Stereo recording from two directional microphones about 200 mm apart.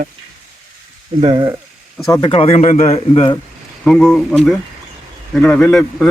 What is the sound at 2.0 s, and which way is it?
Speech, 20° left (ahead or behind).